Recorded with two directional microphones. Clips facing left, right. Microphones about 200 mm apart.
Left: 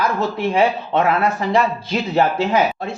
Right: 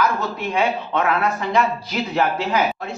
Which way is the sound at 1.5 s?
30° left (ahead or behind).